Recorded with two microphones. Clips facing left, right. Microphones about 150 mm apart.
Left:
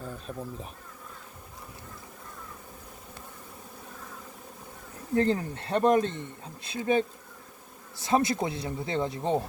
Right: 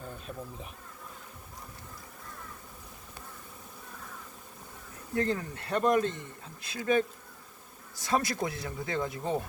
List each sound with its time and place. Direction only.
5.1 s speech: 30° left (ahead or behind)
8.0 s speech: 25° left (ahead or behind)